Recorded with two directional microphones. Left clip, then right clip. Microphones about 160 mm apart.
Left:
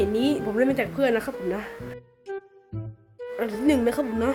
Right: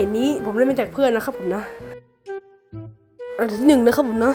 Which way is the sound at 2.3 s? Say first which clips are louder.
Right 3 dB; centre (ahead or behind).